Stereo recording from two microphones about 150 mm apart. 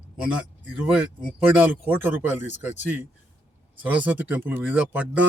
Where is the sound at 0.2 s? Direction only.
5° right (ahead or behind).